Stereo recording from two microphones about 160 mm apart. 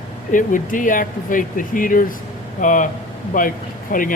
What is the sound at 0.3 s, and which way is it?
Speech, 55° left (ahead or behind).